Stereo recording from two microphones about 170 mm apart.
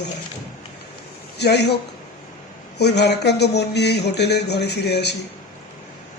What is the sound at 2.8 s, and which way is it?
A man's voice, 80° left.